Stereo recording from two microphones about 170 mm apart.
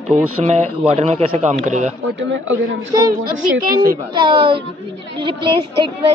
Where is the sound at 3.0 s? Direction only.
60° right (ahead or behind).